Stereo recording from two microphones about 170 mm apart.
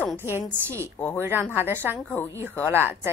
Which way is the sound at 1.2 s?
10° right (ahead or behind).